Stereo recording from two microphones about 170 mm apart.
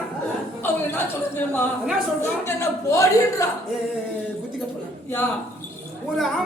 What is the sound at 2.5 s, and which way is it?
Speech, 15° left (ahead or behind).